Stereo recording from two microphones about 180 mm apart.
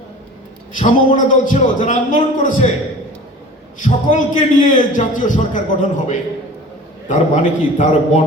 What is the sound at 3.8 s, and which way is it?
Speech, 45° left (ahead or behind).